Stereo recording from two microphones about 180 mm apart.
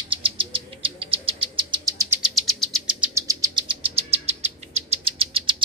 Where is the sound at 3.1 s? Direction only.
20° right (ahead or behind).